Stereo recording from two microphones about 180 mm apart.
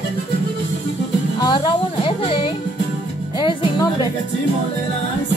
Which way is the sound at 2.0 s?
30° left (ahead or behind).